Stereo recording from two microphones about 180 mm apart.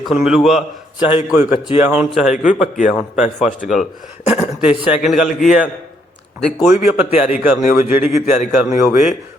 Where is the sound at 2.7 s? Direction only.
45° left (ahead or behind).